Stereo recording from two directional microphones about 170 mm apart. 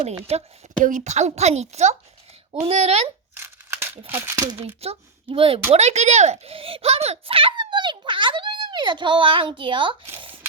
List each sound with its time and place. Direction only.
0.0 s a woman's voice: 35° right (ahead or behind)
3.3 s crumpling: 15° right (ahead or behind)
4.5 s a woman's voice: 35° right (ahead or behind)
10.2 s a sound: 30° right (ahead or behind)